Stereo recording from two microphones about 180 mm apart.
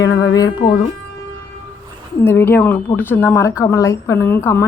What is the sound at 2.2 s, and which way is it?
A woman's voice, 10° left (ahead or behind).